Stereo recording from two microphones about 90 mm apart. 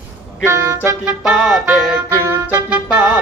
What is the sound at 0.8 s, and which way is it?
Music, 15° right (ahead or behind).